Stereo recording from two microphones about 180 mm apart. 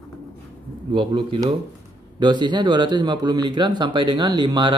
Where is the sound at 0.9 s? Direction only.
25° right (ahead or behind).